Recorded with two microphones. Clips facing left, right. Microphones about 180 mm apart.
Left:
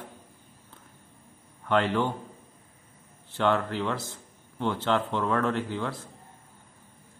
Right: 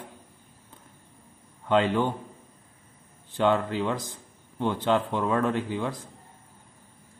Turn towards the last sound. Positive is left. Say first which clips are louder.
# right 2 dB
turn(degrees=-15)  # may be behind; listen again after turning